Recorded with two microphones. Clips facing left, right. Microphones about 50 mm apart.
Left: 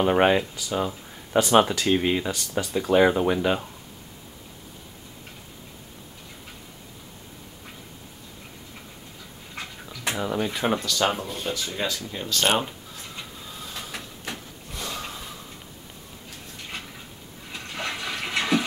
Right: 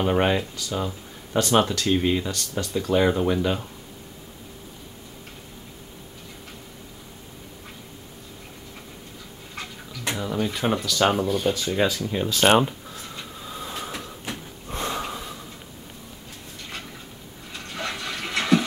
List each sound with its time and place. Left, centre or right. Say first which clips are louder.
0.0 s speech: left 2 dB; centre
9.6 s speech: right 1 dB; centre
13.5 s train: right 8 dB; centre
14.7 s snort: right 6 dB; right
15.0 s snort: right 5 dB; centre
17.5 s toilet flush: even; centre